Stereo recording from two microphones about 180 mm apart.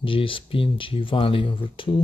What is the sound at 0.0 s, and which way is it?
Speech, 30° left (ahead or behind).